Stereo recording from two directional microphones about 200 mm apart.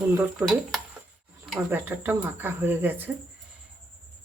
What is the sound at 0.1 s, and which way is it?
Speech, 5° right (ahead or behind).